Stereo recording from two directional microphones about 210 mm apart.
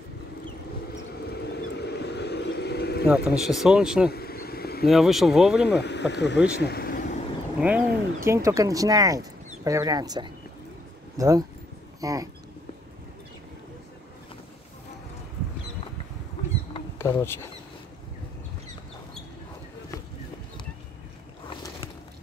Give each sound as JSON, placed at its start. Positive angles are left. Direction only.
{"t": 1.3, "sound": "a sound", "side_deg": 50}
{"t": 3.1, "sound": "speech", "side_deg": 0}
{"t": 4.1, "sound": "vehicle", "side_deg": 45}
{"t": 4.8, "sound": "speech", "side_deg": 0}
{"t": 5.7, "sound": "speech", "side_deg": 55}
{"t": 6.6, "sound": "vehicle", "side_deg": 50}
{"t": 7.6, "sound": "speech", "side_deg": -10}
{"t": 17.2, "sound": "speech", "side_deg": 10}